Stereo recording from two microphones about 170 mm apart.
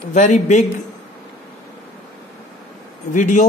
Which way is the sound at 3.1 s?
45° left (ahead or behind).